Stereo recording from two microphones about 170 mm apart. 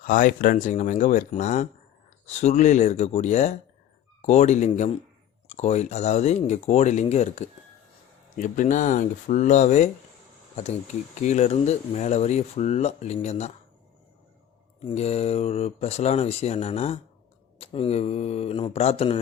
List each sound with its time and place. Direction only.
0.0 s speech: 50° left (ahead or behind)
11.2 s speech: 45° left (ahead or behind)
14.8 s speech: 40° left (ahead or behind)